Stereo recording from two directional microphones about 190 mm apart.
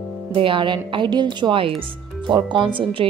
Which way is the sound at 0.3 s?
30° right (ahead or behind).